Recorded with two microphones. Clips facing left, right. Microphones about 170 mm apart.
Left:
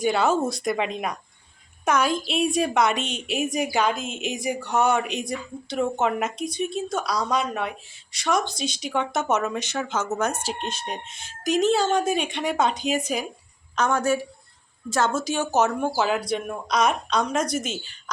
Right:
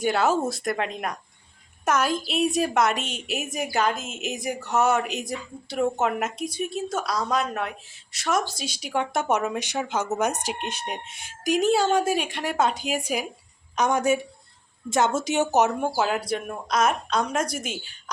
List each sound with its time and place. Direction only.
0.0 s a woman's voice: 5° right (ahead or behind)
16.3 s a woman's voice: 5° right (ahead or behind)